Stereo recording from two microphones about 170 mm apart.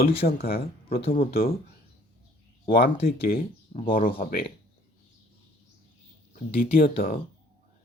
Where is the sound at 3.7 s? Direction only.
40° left (ahead or behind).